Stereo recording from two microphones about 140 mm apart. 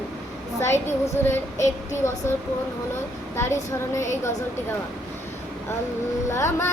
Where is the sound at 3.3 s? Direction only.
20° left (ahead or behind).